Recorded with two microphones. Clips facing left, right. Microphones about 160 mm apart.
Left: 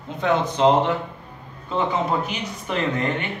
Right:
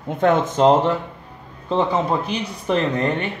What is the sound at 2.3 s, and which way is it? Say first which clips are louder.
Speech: right 6 dB; 35° right (ahead or behind).